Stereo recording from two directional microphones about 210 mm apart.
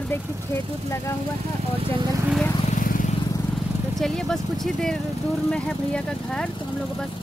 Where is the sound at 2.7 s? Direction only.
40° left (ahead or behind).